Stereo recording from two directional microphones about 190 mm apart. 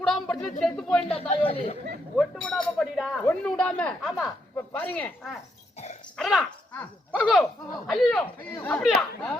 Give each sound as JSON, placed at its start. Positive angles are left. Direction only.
{"t": 0.0, "sound": "a sound", "side_deg": 0}
{"t": 0.6, "sound": "speech", "side_deg": 0}
{"t": 1.1, "sound": "a man's voice", "side_deg": 30}
{"t": 2.1, "sound": "speech", "side_deg": 5}